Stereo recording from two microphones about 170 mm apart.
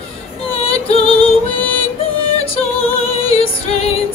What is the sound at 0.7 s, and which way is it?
Music, 35° left (ahead or behind).